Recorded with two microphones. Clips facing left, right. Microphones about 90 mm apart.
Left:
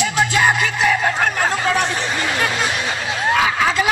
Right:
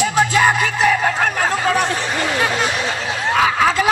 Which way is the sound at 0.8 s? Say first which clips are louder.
Right 1 dB; 20° right (ahead or behind).